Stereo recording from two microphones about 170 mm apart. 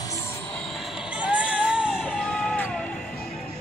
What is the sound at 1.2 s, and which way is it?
Music, 5° right (ahead or behind).